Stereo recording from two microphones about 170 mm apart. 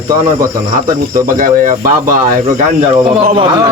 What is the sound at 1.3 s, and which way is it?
Speech, 55° right (ahead or behind).